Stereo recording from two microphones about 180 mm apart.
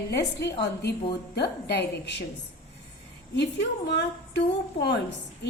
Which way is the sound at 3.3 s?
75° left (ahead or behind).